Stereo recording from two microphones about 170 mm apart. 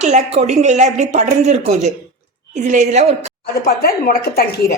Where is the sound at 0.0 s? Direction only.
40° right (ahead or behind).